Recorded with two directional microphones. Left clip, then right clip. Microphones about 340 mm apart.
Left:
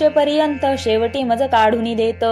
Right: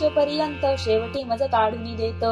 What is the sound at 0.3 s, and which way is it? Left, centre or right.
A woman's voice, left.